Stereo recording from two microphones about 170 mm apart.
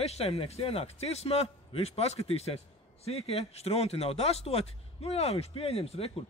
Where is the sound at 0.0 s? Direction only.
35° left (ahead or behind).